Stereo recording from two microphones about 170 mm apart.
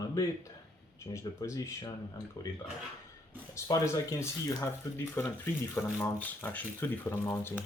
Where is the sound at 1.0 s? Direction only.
15° left (ahead or behind).